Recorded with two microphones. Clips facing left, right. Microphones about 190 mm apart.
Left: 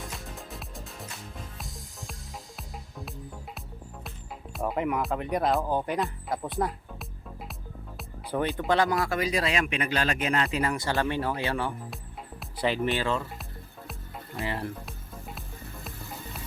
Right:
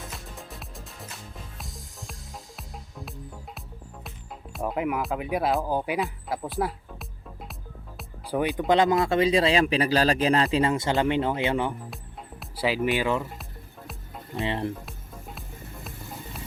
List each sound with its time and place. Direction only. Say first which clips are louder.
0.0 s music: left 1 dB; centre (ahead or behind)
4.5 s speech: right 1 dB; centre (ahead or behind)
8.5 s speech: right 5 dB; 20° right (ahead or behind)
12.4 s speech: right 1 dB; 5° right (ahead or behind)
14.4 s speech: right 4 dB; 20° right (ahead or behind)